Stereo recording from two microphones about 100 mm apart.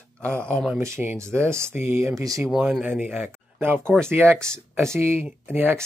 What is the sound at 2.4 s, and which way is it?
Speech, 5° right (ahead or behind).